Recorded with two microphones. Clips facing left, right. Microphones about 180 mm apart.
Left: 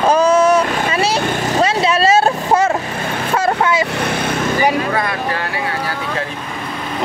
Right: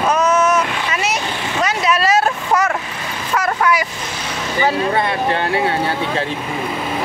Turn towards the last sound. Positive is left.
turn(degrees=-25)  # may be behind; listen again after turning